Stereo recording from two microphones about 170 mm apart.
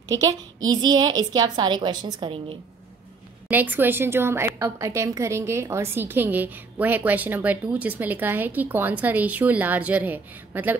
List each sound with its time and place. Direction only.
0.7 s a woman's voice: 25° right (ahead or behind)
3.4 s a woman's voice: 10° right (ahead or behind)